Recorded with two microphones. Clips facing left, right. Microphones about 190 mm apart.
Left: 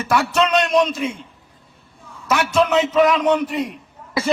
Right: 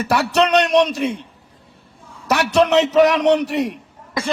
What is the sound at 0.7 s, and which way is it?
Speech, centre (ahead or behind).